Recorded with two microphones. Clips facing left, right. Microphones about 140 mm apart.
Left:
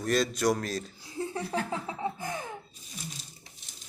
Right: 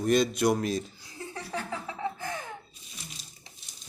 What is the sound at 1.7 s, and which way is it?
Laughter, 20° left (ahead or behind).